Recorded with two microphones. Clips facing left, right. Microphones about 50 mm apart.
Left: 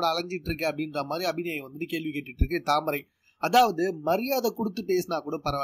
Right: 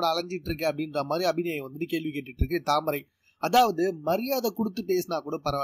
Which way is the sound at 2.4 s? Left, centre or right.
Left.